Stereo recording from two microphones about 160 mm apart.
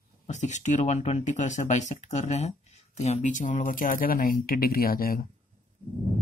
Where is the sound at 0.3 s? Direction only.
45° left (ahead or behind); by 5.3 s 65° left (ahead or behind).